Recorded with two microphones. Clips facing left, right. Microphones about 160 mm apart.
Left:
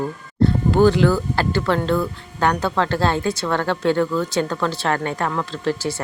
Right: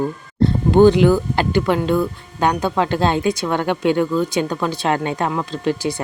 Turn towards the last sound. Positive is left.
turn(degrees=-15)  # may be behind; listen again after turning